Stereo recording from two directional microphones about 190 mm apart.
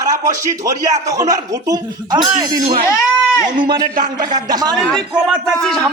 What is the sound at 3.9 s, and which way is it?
Speech, 50° right (ahead or behind).